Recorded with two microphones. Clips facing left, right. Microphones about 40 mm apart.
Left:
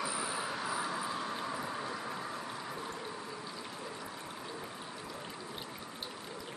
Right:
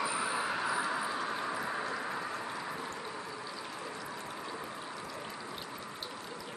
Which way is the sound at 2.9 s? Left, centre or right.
Centre.